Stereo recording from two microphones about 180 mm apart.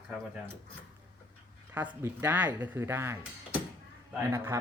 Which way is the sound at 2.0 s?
10° right (ahead or behind).